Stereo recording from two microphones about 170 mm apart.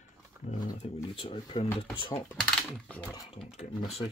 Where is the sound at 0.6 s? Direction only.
30° left (ahead or behind).